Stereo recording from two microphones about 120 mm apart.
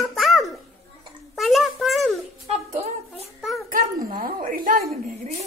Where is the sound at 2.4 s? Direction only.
60° right (ahead or behind).